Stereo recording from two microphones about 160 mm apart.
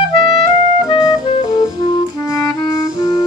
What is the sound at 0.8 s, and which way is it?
Music, 25° left (ahead or behind).